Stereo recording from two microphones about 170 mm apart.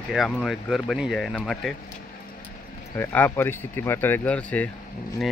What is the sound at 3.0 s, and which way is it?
Speech, 10° left (ahead or behind).